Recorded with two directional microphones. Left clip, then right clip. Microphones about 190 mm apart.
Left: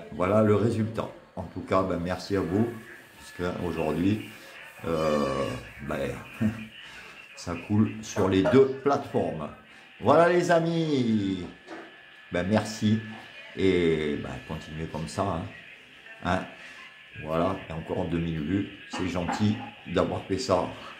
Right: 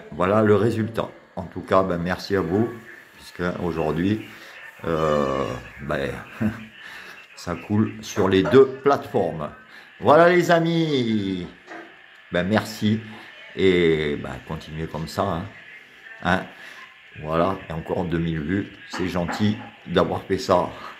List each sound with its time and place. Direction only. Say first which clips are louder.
0.2 s speech: right 5 dB; 20° right (ahead or behind)